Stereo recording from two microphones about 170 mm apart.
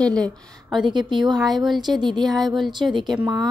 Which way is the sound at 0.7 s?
25° right (ahead or behind).